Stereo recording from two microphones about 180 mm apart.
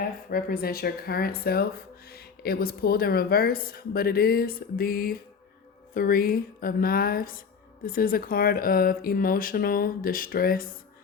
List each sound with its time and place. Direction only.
0.0 s a woman's voice: 55° left (ahead or behind)